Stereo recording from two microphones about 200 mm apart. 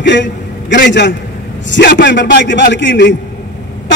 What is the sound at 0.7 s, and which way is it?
A man's voice, 60° left (ahead or behind).